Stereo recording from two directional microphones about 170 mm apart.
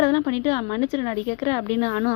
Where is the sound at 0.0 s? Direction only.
30° left (ahead or behind).